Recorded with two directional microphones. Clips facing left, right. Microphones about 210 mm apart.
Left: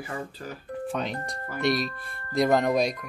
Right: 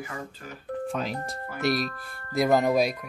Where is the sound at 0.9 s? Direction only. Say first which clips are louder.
Even; 5° right (ahead or behind).